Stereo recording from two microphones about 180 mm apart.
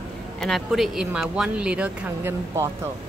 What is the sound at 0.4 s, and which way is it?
Speech, centre (ahead or behind).